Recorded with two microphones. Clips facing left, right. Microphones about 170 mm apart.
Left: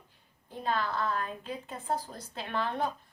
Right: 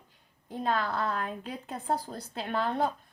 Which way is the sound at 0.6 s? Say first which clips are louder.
Right 2 dB; 45° right (ahead or behind).